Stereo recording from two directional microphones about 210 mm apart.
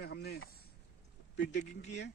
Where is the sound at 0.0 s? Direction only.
50° left (ahead or behind).